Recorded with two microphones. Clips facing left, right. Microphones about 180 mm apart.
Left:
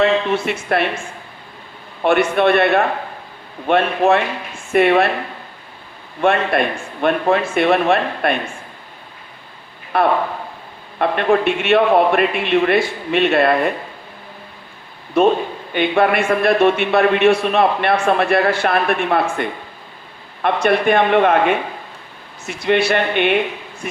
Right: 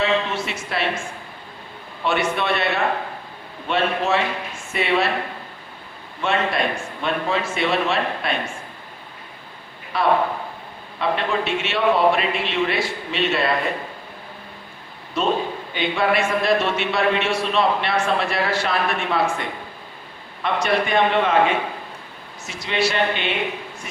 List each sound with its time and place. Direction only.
0.0 s speech: 55° left (ahead or behind)
2.0 s a man's voice: 55° left (ahead or behind)
6.2 s a man's voice: 55° left (ahead or behind)
9.9 s a man's voice: 55° left (ahead or behind)
15.2 s a man's voice: 55° left (ahead or behind)